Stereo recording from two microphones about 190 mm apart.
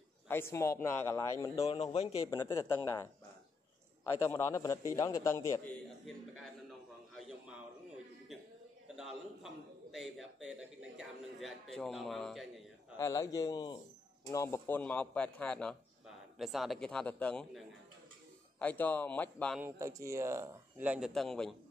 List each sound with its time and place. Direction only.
0.3 s speech: 15° left (ahead or behind)
1.6 s a man's voice: 30° left (ahead or behind)
2.2 s speech: 20° left (ahead or behind)
4.1 s speech: 15° left (ahead or behind)
7.2 s a sound: 5° right (ahead or behind)
8.9 s a man's voice: centre (ahead or behind)
13.0 s a man's voice: 15° left (ahead or behind)
19.6 s speech: 15° right (ahead or behind); by 21.5 s centre (ahead or behind)